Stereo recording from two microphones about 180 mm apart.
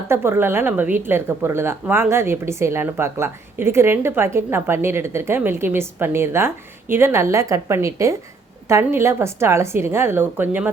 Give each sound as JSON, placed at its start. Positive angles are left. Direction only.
{"t": 0.1, "sound": "a woman's voice", "side_deg": -15}